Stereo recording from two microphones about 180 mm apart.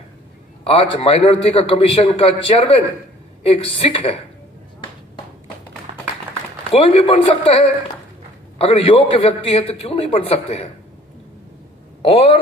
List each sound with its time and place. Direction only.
0.7 s a man's voice: 30° left (ahead or behind)
6.7 s a man's voice: 35° left (ahead or behind)
12.0 s speech: 30° left (ahead or behind)